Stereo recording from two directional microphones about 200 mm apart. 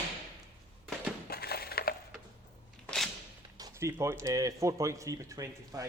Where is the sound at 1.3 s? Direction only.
50° left (ahead or behind).